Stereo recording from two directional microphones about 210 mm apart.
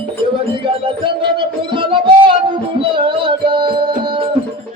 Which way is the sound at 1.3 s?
25° right (ahead or behind).